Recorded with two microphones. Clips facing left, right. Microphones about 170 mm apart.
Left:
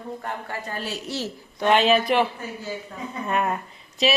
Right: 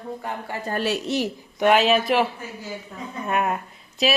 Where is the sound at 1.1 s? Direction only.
15° right (ahead or behind).